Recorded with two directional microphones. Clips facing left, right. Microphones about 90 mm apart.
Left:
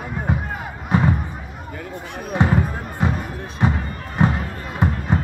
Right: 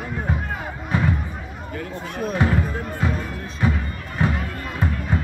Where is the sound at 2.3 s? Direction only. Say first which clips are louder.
Left 4 dB; 25° left (ahead or behind).